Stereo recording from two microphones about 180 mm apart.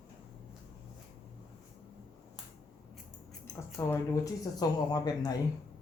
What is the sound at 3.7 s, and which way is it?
Speech, 15° left (ahead or behind).